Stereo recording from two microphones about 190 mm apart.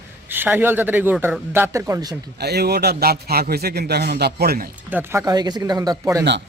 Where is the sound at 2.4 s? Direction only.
60° right (ahead or behind).